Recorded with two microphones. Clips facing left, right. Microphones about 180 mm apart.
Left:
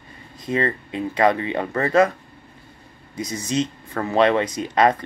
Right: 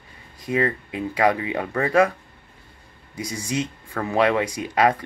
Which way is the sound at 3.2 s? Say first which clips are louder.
Left 3 dB; 10° right (ahead or behind).